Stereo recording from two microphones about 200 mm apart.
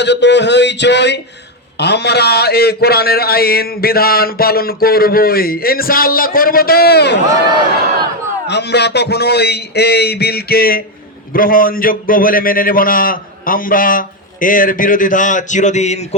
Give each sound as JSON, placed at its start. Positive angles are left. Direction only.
{"t": 0.0, "sound": "a man's voice", "side_deg": 60}
{"t": 8.4, "sound": "a man's voice", "side_deg": 55}